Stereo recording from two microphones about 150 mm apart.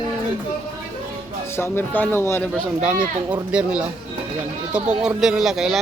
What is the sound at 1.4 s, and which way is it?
Speech, 15° left (ahead or behind).